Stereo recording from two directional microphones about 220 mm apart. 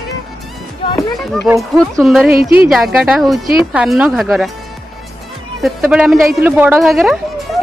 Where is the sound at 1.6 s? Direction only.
Centre (ahead or behind).